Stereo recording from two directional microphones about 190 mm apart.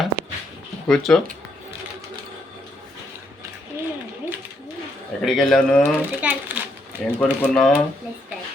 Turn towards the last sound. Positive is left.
turn(degrees=5)  # may be behind; listen again after turning